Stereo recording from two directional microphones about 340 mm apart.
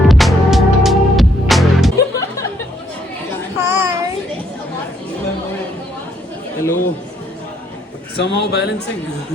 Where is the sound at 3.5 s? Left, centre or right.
Centre.